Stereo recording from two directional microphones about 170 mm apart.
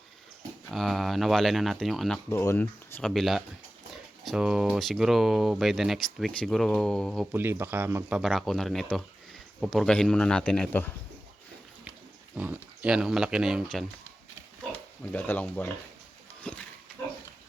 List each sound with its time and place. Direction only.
0.7 s speech: centre (ahead or behind)
2.3 s speech: 15° left (ahead or behind)
3.0 s speech: centre (ahead or behind)
7.3 s speech: 15° right (ahead or behind)
8.2 s speech: centre (ahead or behind)
12.4 s speech: 10° right (ahead or behind)
15.1 s speech: 10° left (ahead or behind)